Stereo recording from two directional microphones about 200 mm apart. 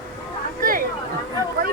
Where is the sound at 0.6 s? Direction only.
45° right (ahead or behind).